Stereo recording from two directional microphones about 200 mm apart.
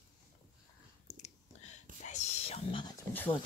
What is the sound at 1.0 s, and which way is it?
Whispering, 35° left (ahead or behind).